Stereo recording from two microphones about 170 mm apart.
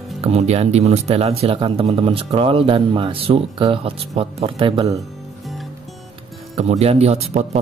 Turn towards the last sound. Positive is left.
turn(degrees=-40)  # may be behind; listen again after turning